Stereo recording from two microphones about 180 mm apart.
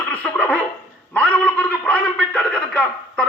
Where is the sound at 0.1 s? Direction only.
10° left (ahead or behind).